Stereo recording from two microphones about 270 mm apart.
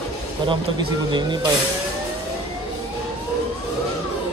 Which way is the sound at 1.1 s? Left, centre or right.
Centre.